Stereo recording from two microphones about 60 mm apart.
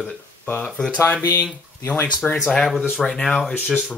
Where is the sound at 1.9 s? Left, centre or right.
Left.